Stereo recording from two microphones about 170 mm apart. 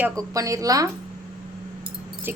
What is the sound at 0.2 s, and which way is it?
Speech, 20° right (ahead or behind).